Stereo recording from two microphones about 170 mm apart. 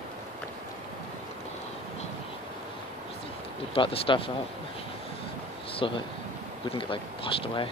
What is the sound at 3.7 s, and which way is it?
Speech, 30° left (ahead or behind).